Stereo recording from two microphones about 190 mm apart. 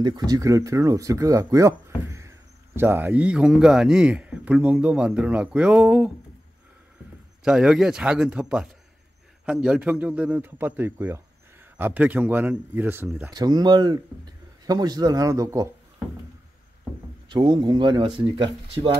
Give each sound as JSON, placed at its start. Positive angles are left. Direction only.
{"t": 0.0, "sound": "speech", "side_deg": -20}
{"t": 7.4, "sound": "speech", "side_deg": -5}
{"t": 13.3, "sound": "speech", "side_deg": -20}
{"t": 17.3, "sound": "speech", "side_deg": -25}